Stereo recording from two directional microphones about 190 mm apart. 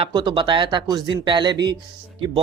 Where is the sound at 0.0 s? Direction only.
25° right (ahead or behind).